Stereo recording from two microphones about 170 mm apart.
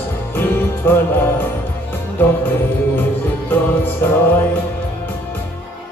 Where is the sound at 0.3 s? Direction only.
10° left (ahead or behind).